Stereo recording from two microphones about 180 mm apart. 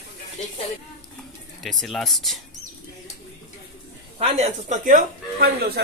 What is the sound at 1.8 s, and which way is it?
Speech, centre (ahead or behind).